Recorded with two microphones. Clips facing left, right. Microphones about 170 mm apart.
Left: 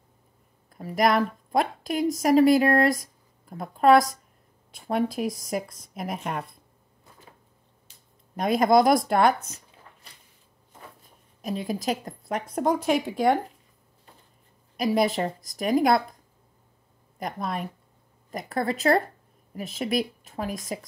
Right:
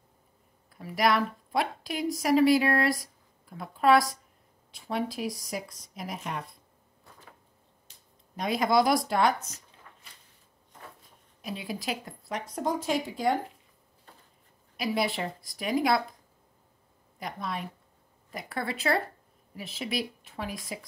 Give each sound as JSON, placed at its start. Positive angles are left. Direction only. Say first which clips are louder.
{"t": 0.7, "sound": "a woman's voice", "louder": "left 3 dB", "side_deg": 45}
{"t": 8.4, "sound": "speech", "louder": "left 5 dB", "side_deg": 50}
{"t": 11.4, "sound": "a woman's voice", "louder": "left 6 dB", "side_deg": 45}
{"t": 14.8, "sound": "speech", "louder": "left 6 dB", "side_deg": 45}
{"t": 17.2, "sound": "speech", "louder": "left 5 dB", "side_deg": 50}